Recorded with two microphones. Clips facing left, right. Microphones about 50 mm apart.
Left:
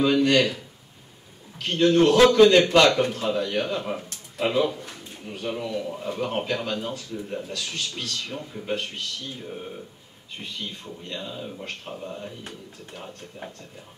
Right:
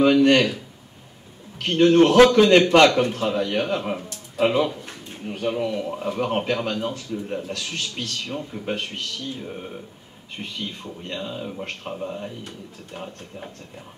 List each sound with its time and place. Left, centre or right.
0.1 s speech: right
1.6 s speech: right
3.9 s a sound: right
4.8 s a sound: right
5.5 s speech: right
11.1 s speech: right